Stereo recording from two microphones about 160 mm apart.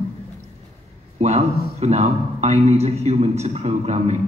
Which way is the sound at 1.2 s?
40° right (ahead or behind).